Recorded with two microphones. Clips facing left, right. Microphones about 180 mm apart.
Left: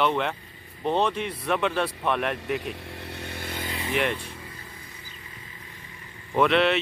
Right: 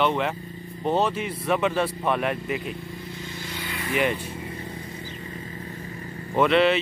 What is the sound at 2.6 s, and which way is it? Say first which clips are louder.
Vehicle: right 1 dB; 75° left (ahead or behind).